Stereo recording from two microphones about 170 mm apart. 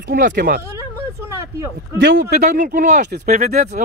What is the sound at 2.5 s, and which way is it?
Speech, 50° right (ahead or behind).